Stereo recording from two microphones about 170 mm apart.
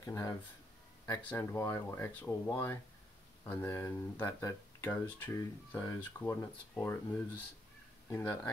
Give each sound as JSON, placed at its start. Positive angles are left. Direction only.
{"t": 0.0, "sound": "speech", "side_deg": 15}
{"t": 8.1, "sound": "speech", "side_deg": 10}